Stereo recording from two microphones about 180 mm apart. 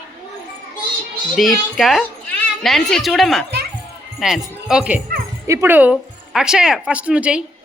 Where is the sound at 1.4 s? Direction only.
Centre (ahead or behind).